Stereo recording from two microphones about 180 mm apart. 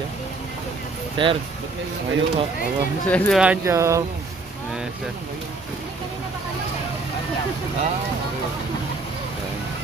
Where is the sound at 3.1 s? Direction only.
Centre (ahead or behind).